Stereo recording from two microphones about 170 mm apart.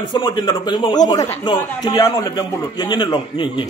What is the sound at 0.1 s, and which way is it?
A man's voice, 25° left (ahead or behind).